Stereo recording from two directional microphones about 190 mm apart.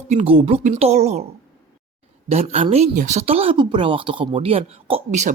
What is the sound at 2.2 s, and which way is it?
Speech, 35° right (ahead or behind).